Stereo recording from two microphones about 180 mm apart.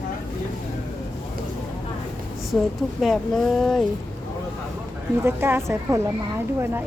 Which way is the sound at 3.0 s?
Centre (ahead or behind).